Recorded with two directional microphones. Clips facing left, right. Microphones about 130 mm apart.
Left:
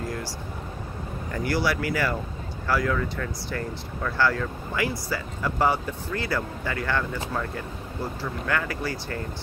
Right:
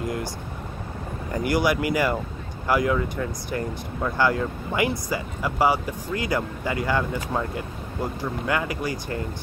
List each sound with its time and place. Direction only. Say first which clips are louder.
1.3 s speech: right 3 dB; 15° right (ahead or behind)